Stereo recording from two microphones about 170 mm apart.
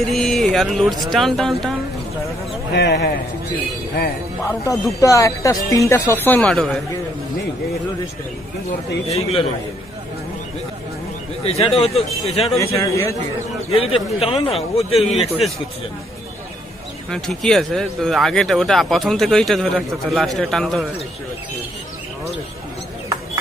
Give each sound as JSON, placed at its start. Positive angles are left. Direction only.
{"t": 0.1, "sound": "speech", "side_deg": 0}
{"t": 2.7, "sound": "a man's voice", "side_deg": 80}
{"t": 4.5, "sound": "speech", "side_deg": 20}
{"t": 9.1, "sound": "a man's voice", "side_deg": 35}
{"t": 11.4, "sound": "a man's voice", "side_deg": 35}
{"t": 12.5, "sound": "speech", "side_deg": 20}
{"t": 13.7, "sound": "a man's voice", "side_deg": 35}
{"t": 17.1, "sound": "speech", "side_deg": 5}